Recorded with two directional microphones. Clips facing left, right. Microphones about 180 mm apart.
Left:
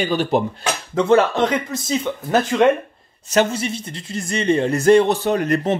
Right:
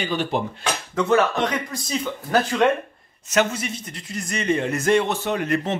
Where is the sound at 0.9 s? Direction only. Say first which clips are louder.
Left 4 dB; 25° left (ahead or behind).